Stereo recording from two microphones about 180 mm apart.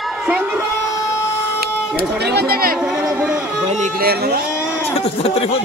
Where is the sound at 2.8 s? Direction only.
5° right (ahead or behind).